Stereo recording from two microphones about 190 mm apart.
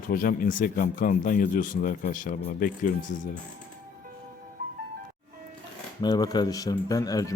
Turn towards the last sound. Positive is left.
turn(degrees=20)  # may be behind; listen again after turning